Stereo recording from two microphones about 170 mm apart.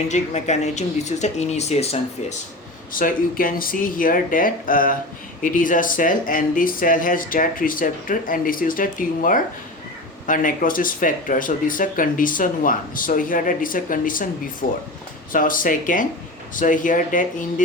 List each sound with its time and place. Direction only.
0.1 s speech: 45° left (ahead or behind)
2.9 s speech: 55° left (ahead or behind)